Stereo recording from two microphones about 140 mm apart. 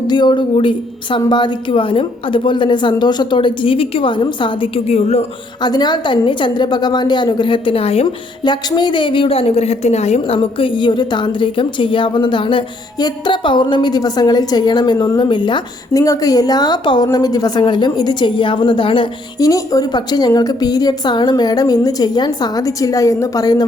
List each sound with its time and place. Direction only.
0.1 s a woman's voice: 35° left (ahead or behind); by 5.2 s 50° left (ahead or behind)
5.6 s a woman's voice: 30° left (ahead or behind)
8.4 s a woman's voice: 30° left (ahead or behind)
15.9 s a woman's voice: 25° left (ahead or behind)
19.4 s a woman's voice: 25° left (ahead or behind)